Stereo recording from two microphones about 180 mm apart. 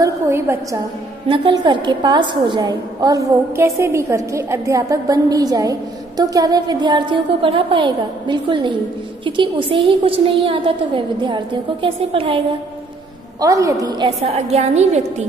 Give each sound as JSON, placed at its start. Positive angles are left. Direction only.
{"t": 0.0, "sound": "a woman's voice", "side_deg": -15}
{"t": 1.3, "sound": "a woman's voice", "side_deg": -25}
{"t": 13.4, "sound": "a woman's voice", "side_deg": -20}